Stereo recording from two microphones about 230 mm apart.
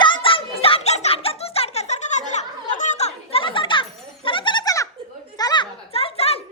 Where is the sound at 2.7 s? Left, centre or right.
Left.